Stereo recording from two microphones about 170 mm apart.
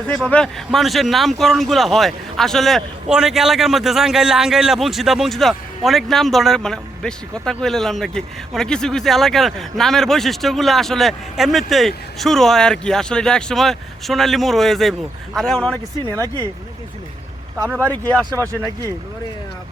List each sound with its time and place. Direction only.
0.1 s speech: 5° left (ahead or behind)
16.1 s speech: 20° right (ahead or behind)
17.8 s speech: 10° left (ahead or behind)